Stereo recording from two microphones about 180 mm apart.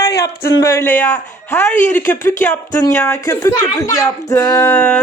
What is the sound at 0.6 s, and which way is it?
Speech, 15° left (ahead or behind).